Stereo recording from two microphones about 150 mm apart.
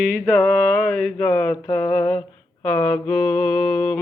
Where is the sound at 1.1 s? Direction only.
15° left (ahead or behind).